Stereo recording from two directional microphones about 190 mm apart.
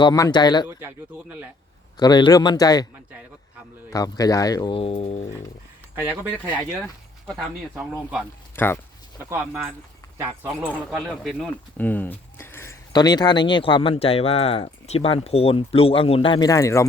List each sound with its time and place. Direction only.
0.0 s speech: 20° left (ahead or behind)
0.7 s speech: 15° right (ahead or behind)
2.0 s speech: 20° left (ahead or behind)
3.9 s speech: 20° left (ahead or behind)
6.0 s speech: 10° right (ahead or behind)
8.5 s speech: 10° left (ahead or behind)
9.3 s speech: 10° right (ahead or behind)
10.9 s speech: centre (ahead or behind)
11.9 s speech: 10° left (ahead or behind)